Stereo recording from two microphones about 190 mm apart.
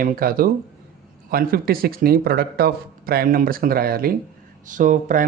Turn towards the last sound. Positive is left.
turn(degrees=-45)  # may be behind; listen again after turning